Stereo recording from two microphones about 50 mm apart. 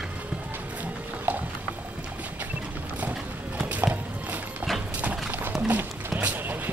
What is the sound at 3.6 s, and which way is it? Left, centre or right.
Clip-clop, right.